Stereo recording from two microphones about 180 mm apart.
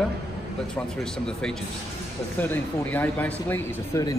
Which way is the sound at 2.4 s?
10° left (ahead or behind).